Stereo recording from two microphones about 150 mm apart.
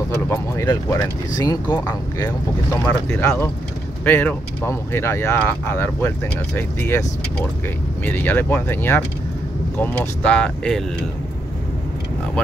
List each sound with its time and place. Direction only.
0.3 s speech: 20° left (ahead or behind)